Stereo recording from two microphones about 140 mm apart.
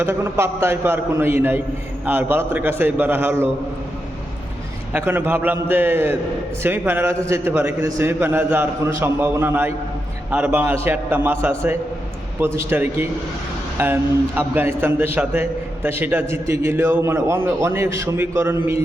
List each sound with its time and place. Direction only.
0.0 s a man's voice: 15° right (ahead or behind)
4.9 s a man's voice: 15° right (ahead or behind)